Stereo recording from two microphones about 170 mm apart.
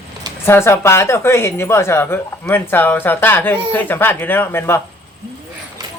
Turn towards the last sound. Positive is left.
turn(degrees=15)  # may be behind; listen again after turning